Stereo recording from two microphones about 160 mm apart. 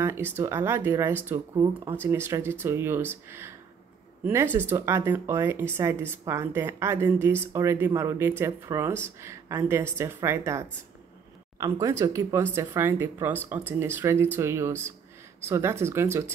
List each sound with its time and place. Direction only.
0.0 s speech: 15° right (ahead or behind)